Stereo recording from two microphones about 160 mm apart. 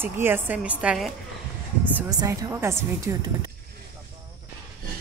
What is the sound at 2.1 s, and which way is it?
Speech, 20° right (ahead or behind).